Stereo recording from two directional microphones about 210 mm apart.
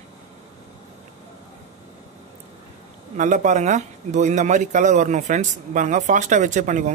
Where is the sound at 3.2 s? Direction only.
35° right (ahead or behind).